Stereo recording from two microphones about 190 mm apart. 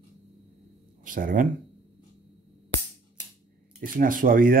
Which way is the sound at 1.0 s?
45° right (ahead or behind).